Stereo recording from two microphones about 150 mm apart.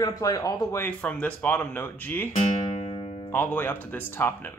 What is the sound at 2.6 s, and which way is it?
Music, 35° left (ahead or behind).